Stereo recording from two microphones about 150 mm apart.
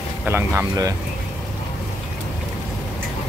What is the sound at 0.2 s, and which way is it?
Speech, 15° right (ahead or behind).